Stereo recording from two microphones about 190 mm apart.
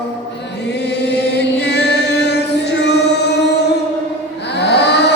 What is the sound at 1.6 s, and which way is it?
Music, 60° left (ahead or behind).